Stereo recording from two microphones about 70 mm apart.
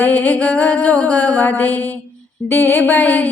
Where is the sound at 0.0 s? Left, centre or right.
Left.